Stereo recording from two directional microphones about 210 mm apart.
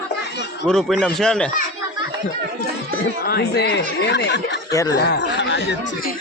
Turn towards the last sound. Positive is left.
turn(degrees=55)  # may be behind; listen again after turning